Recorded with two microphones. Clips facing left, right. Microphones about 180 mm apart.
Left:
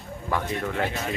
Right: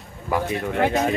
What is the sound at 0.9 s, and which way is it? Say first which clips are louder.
Speech: right 9 dB; 45° right (ahead or behind).